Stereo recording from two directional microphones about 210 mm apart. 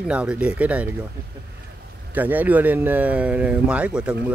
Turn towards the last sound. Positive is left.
turn(degrees=-5)  # may be behind; listen again after turning